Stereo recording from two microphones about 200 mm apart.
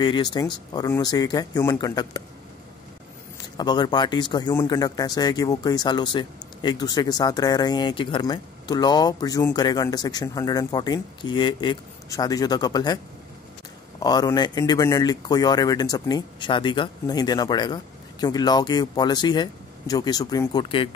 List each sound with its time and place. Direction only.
0.0 s a man's voice: 20° left (ahead or behind)
3.3 s a man's voice: 20° left (ahead or behind)